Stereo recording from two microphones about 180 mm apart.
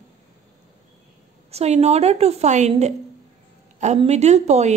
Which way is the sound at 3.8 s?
40° right (ahead or behind).